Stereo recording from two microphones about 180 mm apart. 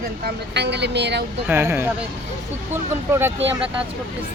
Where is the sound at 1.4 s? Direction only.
15° right (ahead or behind).